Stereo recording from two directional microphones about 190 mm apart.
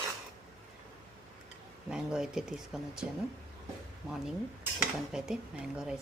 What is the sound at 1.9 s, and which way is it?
Speech, 5° right (ahead or behind).